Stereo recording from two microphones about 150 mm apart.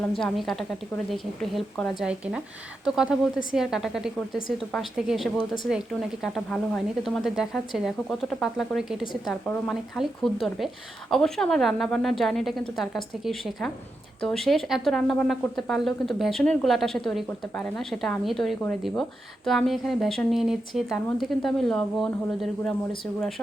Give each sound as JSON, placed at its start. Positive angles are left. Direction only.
{"t": 0.1, "sound": "a woman's voice", "side_deg": 5}